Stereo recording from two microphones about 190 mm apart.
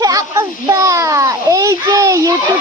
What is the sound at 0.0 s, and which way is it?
Children playing, 15° right (ahead or behind).